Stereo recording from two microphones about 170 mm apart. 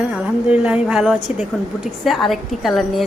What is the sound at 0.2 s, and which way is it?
A woman's voice, 5° right (ahead or behind).